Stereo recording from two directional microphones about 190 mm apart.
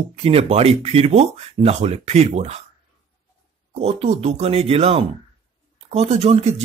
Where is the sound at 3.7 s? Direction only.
35° right (ahead or behind).